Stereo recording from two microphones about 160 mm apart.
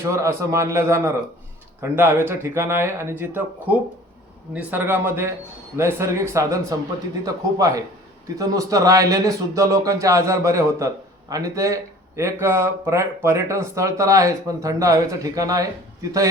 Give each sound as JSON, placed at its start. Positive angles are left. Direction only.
{"t": 0.0, "sound": "a man's voice", "side_deg": -20}